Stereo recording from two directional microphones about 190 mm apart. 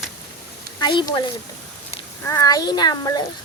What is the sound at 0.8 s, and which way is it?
Speech, 25° left (ahead or behind).